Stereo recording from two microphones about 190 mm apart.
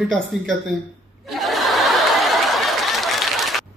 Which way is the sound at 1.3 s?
Centre (ahead or behind).